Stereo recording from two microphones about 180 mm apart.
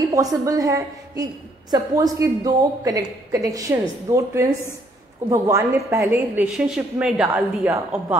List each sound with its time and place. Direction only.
0.1 s a woman's voice: 20° right (ahead or behind)